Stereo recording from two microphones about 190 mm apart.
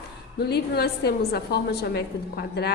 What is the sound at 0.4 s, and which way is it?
A woman's voice, 55° left (ahead or behind).